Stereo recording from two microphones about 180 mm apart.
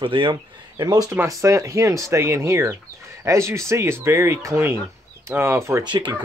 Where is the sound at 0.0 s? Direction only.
30° right (ahead or behind).